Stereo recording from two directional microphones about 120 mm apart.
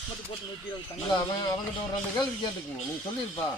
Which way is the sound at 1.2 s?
35° left (ahead or behind).